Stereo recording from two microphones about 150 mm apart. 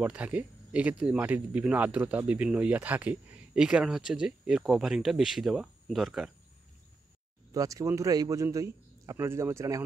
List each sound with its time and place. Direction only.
0.0 s speech: 10° right (ahead or behind)
7.5 s a man's voice: 25° right (ahead or behind)